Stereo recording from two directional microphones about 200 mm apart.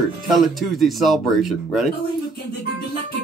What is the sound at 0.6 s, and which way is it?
Speech, centre (ahead or behind).